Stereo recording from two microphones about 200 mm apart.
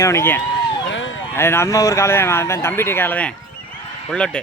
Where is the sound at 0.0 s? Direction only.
15° left (ahead or behind).